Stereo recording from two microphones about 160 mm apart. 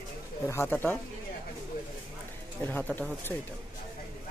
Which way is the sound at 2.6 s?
10° left (ahead or behind).